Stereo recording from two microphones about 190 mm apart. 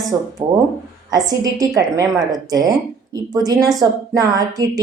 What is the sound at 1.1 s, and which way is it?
Speech, 20° right (ahead or behind).